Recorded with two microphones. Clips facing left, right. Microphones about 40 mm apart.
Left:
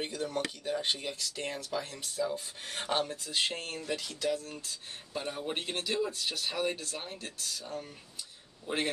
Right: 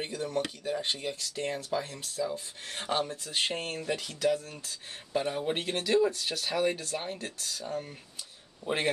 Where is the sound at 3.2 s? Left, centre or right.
Right.